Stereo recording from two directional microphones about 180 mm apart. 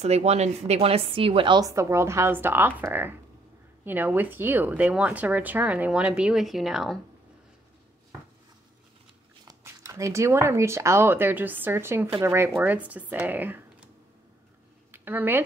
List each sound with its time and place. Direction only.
0.0 s a woman's voice: 35° right (ahead or behind); by 7.0 s centre (ahead or behind)
9.4 s speech: 20° right (ahead or behind)
14.9 s speech: 10° right (ahead or behind)